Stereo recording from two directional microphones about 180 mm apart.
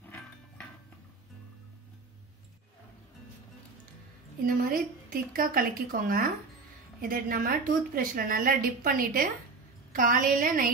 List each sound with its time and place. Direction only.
4.5 s a woman's voice: 50° right (ahead or behind)